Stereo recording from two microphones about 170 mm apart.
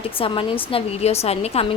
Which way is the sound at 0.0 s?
30° left (ahead or behind).